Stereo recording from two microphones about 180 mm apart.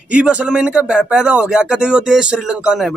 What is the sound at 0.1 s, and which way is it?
A man's voice, 5° right (ahead or behind).